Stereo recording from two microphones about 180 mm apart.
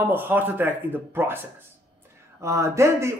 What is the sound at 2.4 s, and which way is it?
Speech, 15° right (ahead or behind).